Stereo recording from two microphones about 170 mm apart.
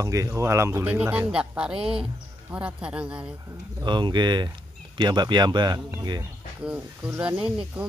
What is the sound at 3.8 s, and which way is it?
Speech, 25° right (ahead or behind).